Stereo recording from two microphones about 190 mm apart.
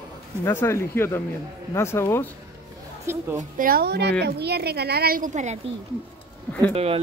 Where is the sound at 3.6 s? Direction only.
55° right (ahead or behind).